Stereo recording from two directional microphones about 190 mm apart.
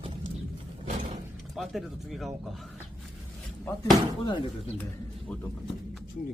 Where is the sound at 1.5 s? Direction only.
Centre (ahead or behind).